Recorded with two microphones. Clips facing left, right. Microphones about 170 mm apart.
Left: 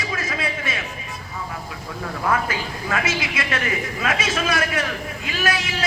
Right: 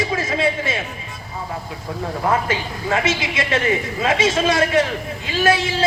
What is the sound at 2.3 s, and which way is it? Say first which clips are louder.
A man's voice: right 2 dB; 25° right (ahead or behind).